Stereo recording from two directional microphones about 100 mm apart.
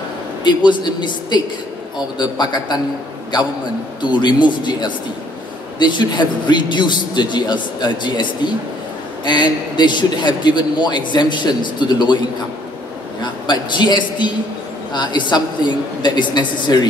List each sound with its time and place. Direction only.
0.4 s a man's voice: 50° left (ahead or behind)
4.0 s a man's voice: 50° left (ahead or behind)
13.2 s a man's voice: 50° left (ahead or behind)